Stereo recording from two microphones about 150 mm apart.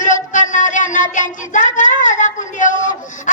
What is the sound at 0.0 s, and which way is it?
Child singing, 55° left (ahead or behind).